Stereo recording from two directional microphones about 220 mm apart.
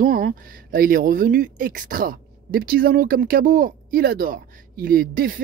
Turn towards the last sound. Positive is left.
turn(degrees=-40)  # may be behind; listen again after turning